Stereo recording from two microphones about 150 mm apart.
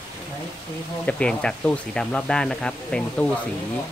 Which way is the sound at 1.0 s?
5° left (ahead or behind).